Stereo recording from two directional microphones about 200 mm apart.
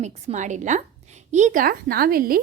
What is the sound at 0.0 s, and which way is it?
A woman's voice, 35° right (ahead or behind).